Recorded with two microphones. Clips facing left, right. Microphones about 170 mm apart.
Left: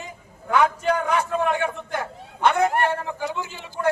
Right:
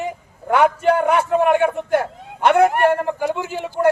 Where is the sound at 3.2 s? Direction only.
60° right (ahead or behind).